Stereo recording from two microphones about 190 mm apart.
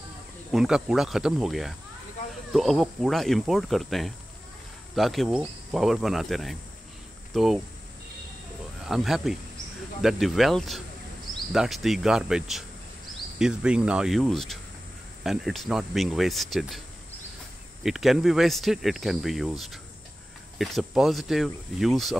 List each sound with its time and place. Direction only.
0.5 s speech: 5° right (ahead or behind)
8.8 s speech: centre (ahead or behind)
17.8 s speech: centre (ahead or behind)